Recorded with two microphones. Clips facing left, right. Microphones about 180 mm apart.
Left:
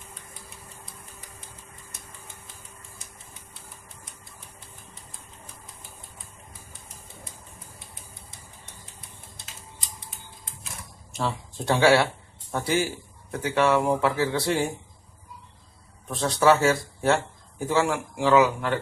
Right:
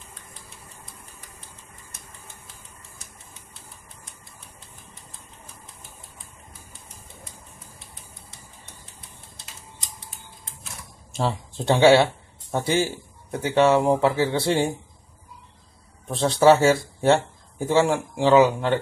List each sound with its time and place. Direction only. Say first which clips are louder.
11.1 s speech: right 3 dB; 30° right (ahead or behind)
16.1 s speech: right 4 dB; 30° right (ahead or behind)